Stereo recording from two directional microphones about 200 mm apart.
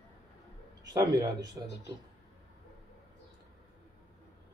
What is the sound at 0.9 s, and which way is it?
Speech, 20° right (ahead or behind).